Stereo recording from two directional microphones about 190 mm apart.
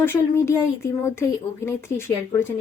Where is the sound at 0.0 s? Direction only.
10° left (ahead or behind).